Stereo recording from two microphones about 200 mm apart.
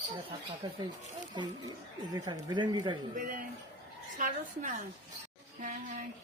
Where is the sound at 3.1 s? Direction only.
40° right (ahead or behind).